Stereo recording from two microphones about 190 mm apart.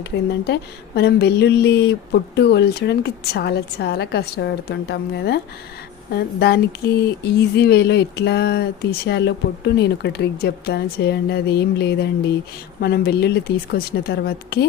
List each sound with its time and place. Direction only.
0.0 s speech: 60° left (ahead or behind)